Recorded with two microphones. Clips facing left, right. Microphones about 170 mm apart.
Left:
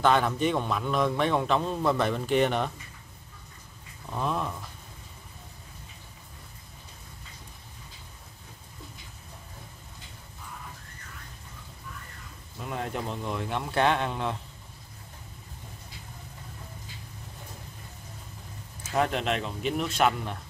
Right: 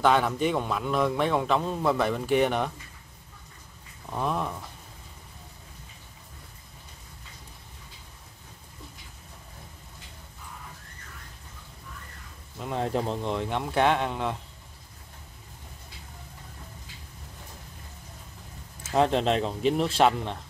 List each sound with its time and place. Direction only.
0.0 s a man's voice: 5° right (ahead or behind)
4.1 s speech: 10° right (ahead or behind)
12.5 s speech: 25° right (ahead or behind)
18.9 s speech: 25° right (ahead or behind)